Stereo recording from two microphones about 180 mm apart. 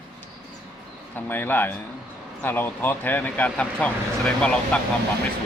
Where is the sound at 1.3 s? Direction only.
10° left (ahead or behind).